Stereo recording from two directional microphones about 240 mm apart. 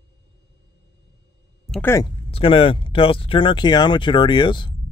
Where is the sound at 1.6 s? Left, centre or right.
Centre.